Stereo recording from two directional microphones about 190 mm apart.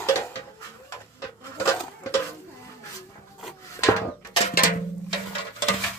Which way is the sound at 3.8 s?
15° left (ahead or behind).